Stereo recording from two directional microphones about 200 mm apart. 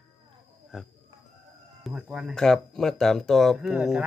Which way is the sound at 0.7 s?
Centre (ahead or behind).